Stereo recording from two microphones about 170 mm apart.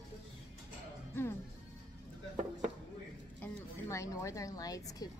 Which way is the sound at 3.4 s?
15° left (ahead or behind).